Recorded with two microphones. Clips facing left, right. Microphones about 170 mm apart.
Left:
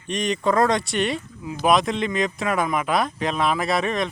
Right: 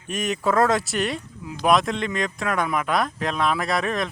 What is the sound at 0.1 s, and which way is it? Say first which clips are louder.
Speech: left 1 dB; 5° right (ahead or behind).